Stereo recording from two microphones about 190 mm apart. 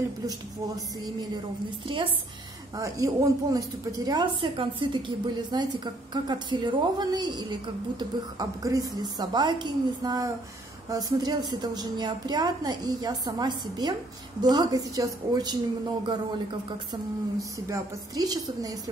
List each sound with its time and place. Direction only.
2.7 s a woman's voice: 20° right (ahead or behind)
16.9 s a woman's voice: 20° right (ahead or behind)